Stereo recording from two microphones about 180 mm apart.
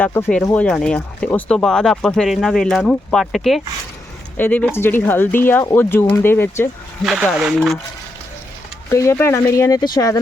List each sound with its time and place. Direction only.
0.0 s speech: 10° left (ahead or behind)
7.0 s speech: centre (ahead or behind)
8.9 s speech: 15° left (ahead or behind)